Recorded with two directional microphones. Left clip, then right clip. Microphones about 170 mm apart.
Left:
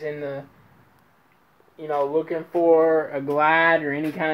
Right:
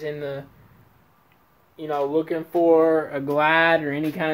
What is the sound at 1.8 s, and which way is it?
Speech, 5° right (ahead or behind).